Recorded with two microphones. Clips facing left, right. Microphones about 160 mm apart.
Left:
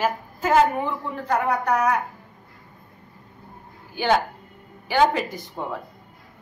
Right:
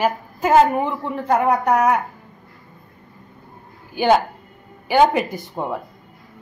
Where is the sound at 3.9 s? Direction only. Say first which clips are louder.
Right 5 dB; 15° right (ahead or behind).